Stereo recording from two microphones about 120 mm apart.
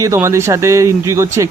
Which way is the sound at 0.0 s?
25° right (ahead or behind).